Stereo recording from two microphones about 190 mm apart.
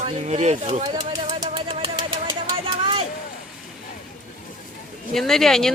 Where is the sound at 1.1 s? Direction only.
25° right (ahead or behind).